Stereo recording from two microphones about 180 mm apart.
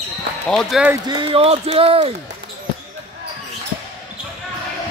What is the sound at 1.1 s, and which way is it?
Speech, 30° right (ahead or behind).